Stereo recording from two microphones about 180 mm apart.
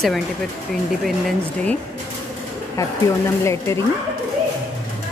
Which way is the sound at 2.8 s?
15° left (ahead or behind).